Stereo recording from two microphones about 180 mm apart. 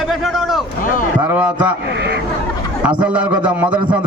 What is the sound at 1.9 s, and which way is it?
Speech, 70° right (ahead or behind).